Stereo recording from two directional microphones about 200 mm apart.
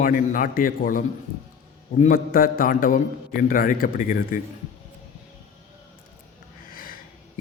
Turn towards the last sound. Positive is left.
turn(degrees=45)  # may be behind; listen again after turning